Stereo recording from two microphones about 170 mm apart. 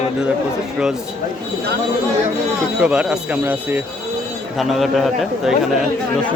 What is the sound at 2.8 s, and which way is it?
Speech, 5° right (ahead or behind).